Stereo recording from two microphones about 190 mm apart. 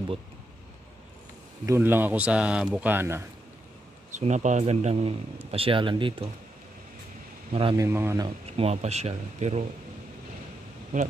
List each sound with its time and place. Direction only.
1.7 s speech: 10° right (ahead or behind)
4.1 s a man's voice: 40° right (ahead or behind)
7.5 s speech: 25° right (ahead or behind)
7.8 s speech: 15° right (ahead or behind)
8.5 s a man's voice: 35° right (ahead or behind)